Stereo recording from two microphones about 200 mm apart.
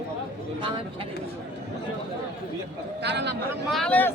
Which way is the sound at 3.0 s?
60° right (ahead or behind).